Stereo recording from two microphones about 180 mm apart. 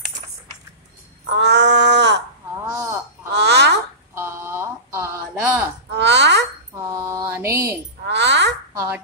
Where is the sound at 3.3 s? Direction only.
70° right (ahead or behind).